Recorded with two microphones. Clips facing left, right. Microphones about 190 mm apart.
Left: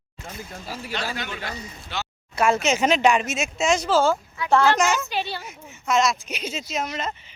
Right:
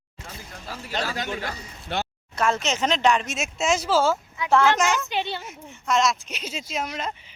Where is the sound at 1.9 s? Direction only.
55° right (ahead or behind).